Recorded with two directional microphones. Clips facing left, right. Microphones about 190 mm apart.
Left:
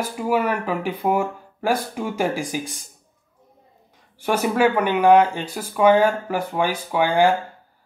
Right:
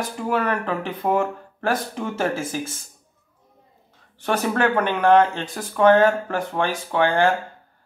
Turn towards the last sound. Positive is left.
turn(degrees=10)  # may be behind; listen again after turning